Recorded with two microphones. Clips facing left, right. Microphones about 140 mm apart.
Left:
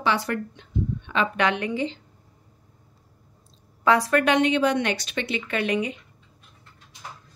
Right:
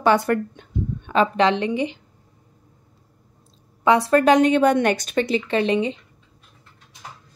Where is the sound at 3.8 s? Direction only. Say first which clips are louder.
Right 4 dB; 25° right (ahead or behind).